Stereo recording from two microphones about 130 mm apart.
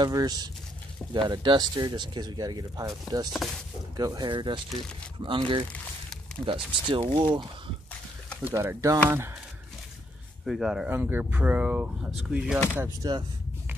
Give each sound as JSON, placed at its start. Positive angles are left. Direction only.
{"t": 0.0, "sound": "speech", "side_deg": -30}
{"t": 8.5, "sound": "speech", "side_deg": -25}
{"t": 10.4, "sound": "speech", "side_deg": 0}
{"t": 10.9, "sound": "speech", "side_deg": -15}
{"t": 12.7, "sound": "speech", "side_deg": -20}